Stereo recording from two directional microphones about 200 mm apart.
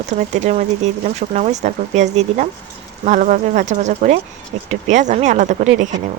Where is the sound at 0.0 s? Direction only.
35° right (ahead or behind).